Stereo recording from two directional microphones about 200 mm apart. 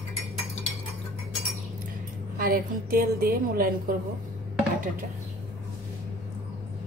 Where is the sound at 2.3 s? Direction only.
45° right (ahead or behind).